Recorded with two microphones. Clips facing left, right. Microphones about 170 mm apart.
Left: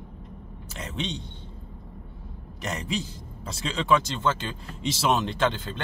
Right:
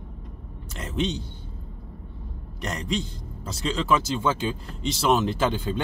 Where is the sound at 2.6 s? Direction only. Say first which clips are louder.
Right 2 dB; centre (ahead or behind).